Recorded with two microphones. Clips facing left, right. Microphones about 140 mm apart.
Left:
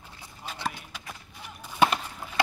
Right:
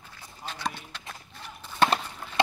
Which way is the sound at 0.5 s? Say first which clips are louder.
Even; 10° left (ahead or behind).